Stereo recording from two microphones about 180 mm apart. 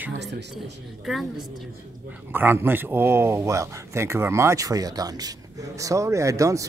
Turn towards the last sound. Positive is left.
turn(degrees=-15)  # may be behind; listen again after turning